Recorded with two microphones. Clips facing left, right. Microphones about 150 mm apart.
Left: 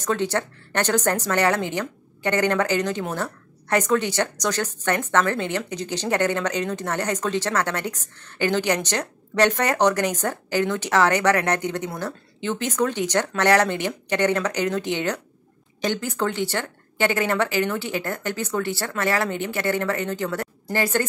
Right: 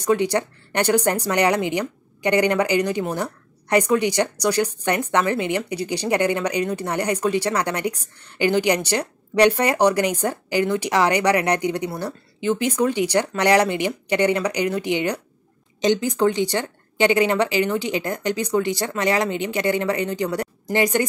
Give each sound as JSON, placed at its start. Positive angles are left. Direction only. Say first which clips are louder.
{"t": 0.0, "sound": "speech", "louder": "right 4 dB", "side_deg": -15}